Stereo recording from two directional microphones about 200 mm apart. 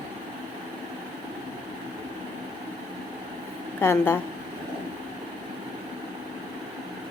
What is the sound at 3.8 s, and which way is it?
Speech, 10° left (ahead or behind).